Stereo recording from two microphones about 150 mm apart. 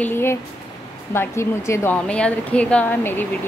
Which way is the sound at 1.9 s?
5° left (ahead or behind).